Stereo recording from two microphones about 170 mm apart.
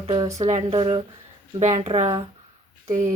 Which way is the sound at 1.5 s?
45° right (ahead or behind).